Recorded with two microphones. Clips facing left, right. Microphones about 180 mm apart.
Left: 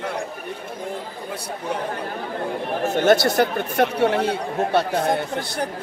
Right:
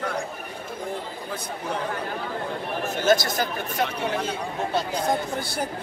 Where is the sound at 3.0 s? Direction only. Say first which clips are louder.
Left 5 dB; 65° left (ahead or behind).